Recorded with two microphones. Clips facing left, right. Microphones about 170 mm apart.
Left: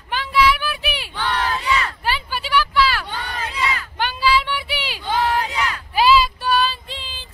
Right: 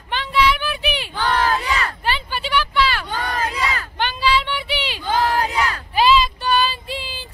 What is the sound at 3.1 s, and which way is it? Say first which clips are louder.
Crowd: right 5 dB; 45° right (ahead or behind).